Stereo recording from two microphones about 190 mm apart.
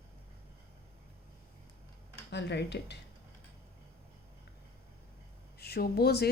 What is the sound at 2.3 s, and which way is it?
Speech, 65° left (ahead or behind).